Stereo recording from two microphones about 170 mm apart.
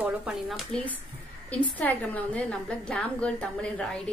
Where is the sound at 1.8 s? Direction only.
10° left (ahead or behind).